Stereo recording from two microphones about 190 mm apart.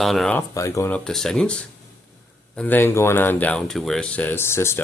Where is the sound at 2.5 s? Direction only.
10° left (ahead or behind).